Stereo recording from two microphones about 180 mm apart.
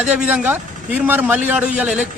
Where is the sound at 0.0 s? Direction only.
5° right (ahead or behind).